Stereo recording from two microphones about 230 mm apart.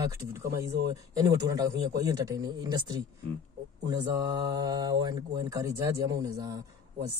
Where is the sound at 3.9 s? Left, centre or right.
Centre.